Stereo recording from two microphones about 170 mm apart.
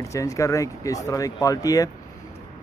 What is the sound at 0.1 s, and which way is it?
Speech, 20° left (ahead or behind).